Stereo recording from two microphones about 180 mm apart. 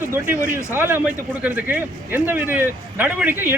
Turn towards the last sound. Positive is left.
turn(degrees=-10)  # may be behind; listen again after turning